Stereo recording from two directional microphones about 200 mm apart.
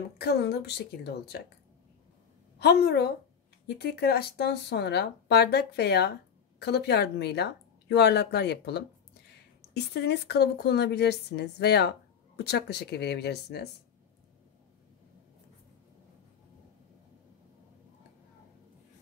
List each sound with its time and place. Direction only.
0.2 s speech: 55° left (ahead or behind)
2.6 s speech: 50° left (ahead or behind)